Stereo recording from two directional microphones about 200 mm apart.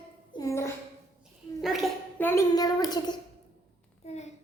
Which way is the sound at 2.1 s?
10° left (ahead or behind).